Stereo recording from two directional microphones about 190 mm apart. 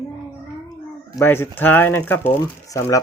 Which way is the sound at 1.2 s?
10° left (ahead or behind).